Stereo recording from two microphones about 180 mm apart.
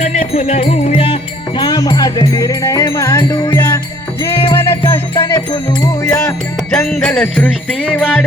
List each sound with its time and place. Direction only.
0.0 s music: 40° left (ahead or behind); by 3.8 s 15° left (ahead or behind)
4.8 s music: 25° left (ahead or behind)
6.7 s music: 5° left (ahead or behind)